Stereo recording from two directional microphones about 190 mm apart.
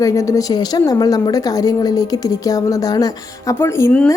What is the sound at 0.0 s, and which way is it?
A woman's voice, 15° left (ahead or behind).